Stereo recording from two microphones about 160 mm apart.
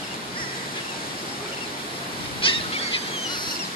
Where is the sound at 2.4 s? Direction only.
35° left (ahead or behind).